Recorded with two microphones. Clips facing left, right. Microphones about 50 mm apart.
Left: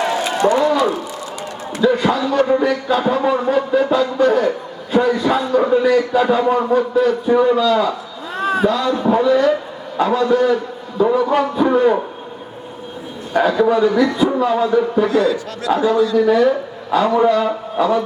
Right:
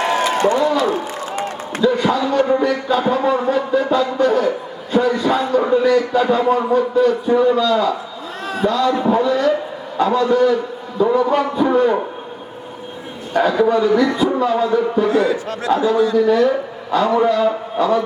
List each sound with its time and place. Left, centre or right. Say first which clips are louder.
0.0 s a sound: right 1 dB; right
1.8 s a man's voice: left 1 dB; centre
8.4 s a sound: left 8 dB; left
8.6 s a man's voice: right 3 dB; centre
13.5 s a man's voice: even; centre
15.0 s a man's voice: even; right
16.1 s a man's voice: left 1 dB; centre